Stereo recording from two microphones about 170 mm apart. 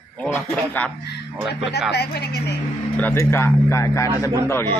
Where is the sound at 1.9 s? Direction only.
70° left (ahead or behind).